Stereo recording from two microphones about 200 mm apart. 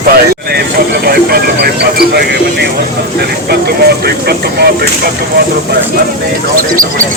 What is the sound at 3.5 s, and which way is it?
Speech, 55° right (ahead or behind).